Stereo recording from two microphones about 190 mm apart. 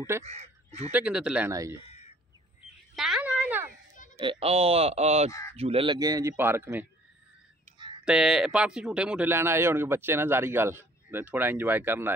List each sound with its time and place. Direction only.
0.2 s speech: 35° right (ahead or behind)
0.9 s speech: 5° right (ahead or behind)
1.5 s speech: 20° right (ahead or behind)
1.9 s a sound: 35° left (ahead or behind)
3.0 s a sound: 5° right (ahead or behind)
4.2 s speech: 30° right (ahead or behind); by 6.9 s 10° right (ahead or behind)
8.0 s speech: 5° right (ahead or behind)